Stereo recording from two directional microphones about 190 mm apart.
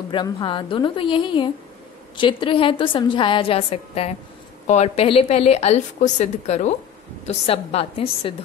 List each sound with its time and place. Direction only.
0.1 s a woman's voice: 25° left (ahead or behind)